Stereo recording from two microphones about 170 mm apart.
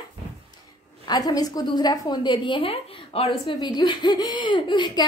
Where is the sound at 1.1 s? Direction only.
25° left (ahead or behind).